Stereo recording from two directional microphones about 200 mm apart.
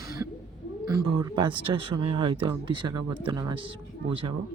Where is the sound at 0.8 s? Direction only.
20° right (ahead or behind).